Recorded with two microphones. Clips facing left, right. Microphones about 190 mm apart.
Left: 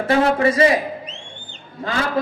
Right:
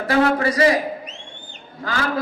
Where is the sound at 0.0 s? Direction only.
25° left (ahead or behind).